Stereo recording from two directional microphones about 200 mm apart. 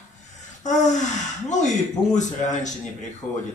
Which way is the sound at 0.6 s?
35° left (ahead or behind).